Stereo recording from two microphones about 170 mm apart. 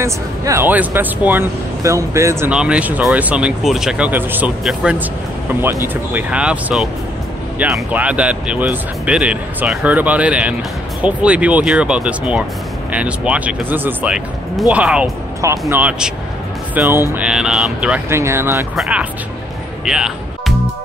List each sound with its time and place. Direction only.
0.0 s speech: 15° right (ahead or behind)
2.5 s speech: 5° right (ahead or behind)
6.1 s speech: 5° right (ahead or behind)
19.8 s basketball bounce: 5° right (ahead or behind)